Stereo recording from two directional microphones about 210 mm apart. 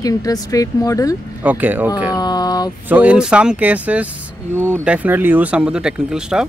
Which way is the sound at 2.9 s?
5° right (ahead or behind).